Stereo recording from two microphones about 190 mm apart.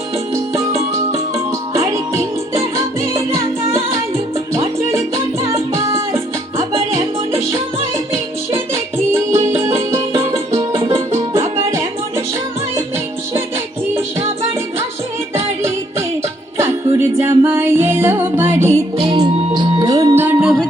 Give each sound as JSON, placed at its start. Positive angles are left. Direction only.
{"t": 0.3, "sound": "music", "side_deg": -15}
{"t": 4.5, "sound": "salsa music", "side_deg": -15}
{"t": 5.5, "sound": "music", "side_deg": -15}
{"t": 8.5, "sound": "music", "side_deg": -15}
{"t": 10.6, "sound": "music", "side_deg": -30}
{"t": 10.9, "sound": "music", "side_deg": -15}
{"t": 15.4, "sound": "music", "side_deg": -15}